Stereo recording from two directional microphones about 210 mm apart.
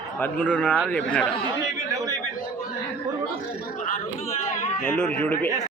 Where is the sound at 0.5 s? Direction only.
10° left (ahead or behind).